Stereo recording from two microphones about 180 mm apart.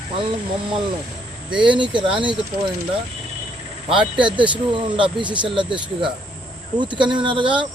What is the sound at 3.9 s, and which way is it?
Speech, 25° right (ahead or behind).